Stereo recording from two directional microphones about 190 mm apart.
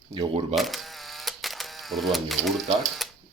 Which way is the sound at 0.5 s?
Centre (ahead or behind).